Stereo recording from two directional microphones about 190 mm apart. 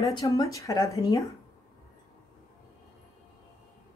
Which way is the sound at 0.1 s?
15° left (ahead or behind).